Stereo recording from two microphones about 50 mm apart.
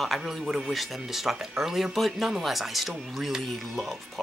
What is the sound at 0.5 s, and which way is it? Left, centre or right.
Speech, centre.